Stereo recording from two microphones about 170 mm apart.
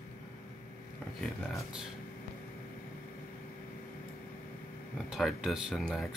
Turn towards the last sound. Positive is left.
turn(degrees=0)  # may be behind; listen again after turning